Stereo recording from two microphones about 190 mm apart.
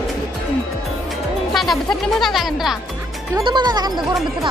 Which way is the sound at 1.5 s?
Centre (ahead or behind).